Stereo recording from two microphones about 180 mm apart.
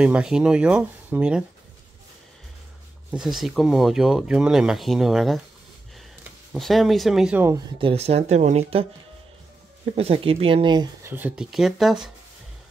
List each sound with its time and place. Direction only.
0.0 s speech: 5° right (ahead or behind)
3.1 s speech: 5° right (ahead or behind)
6.5 s speech: centre (ahead or behind)
7.8 s speech: 35° right (ahead or behind)
9.9 s speech: 30° right (ahead or behind)
11.1 s speech: 10° right (ahead or behind)